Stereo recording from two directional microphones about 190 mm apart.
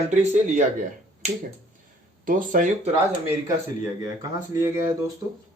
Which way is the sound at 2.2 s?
45° right (ahead or behind).